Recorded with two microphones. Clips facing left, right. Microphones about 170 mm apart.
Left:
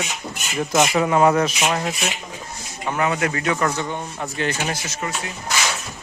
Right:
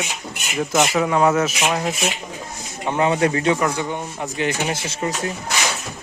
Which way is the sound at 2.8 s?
25° right (ahead or behind).